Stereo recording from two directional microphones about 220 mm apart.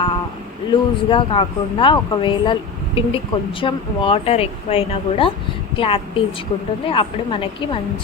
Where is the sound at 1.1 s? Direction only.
25° left (ahead or behind).